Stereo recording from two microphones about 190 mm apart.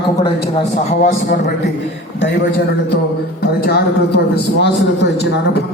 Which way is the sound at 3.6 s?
60° left (ahead or behind).